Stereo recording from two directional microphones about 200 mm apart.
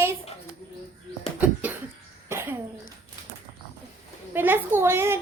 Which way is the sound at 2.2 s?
10° right (ahead or behind).